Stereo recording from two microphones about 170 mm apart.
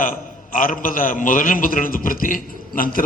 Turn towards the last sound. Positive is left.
turn(degrees=55)  # may be behind; listen again after turning